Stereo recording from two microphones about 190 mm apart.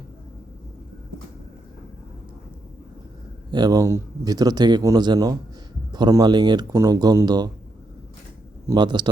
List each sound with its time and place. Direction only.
3.5 s speech: 20° right (ahead or behind)
8.6 s speech: 25° right (ahead or behind)